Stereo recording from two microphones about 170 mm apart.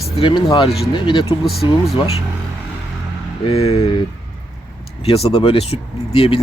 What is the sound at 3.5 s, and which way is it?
Speech, 35° left (ahead or behind).